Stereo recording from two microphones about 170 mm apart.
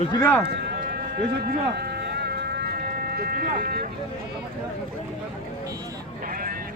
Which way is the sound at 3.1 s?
65° right (ahead or behind).